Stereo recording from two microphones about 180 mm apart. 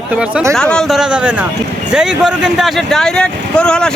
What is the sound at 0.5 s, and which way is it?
Speech, 5° left (ahead or behind).